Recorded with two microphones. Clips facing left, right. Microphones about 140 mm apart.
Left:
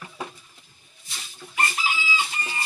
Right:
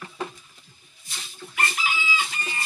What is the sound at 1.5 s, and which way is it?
Chicken, 30° left (ahead or behind).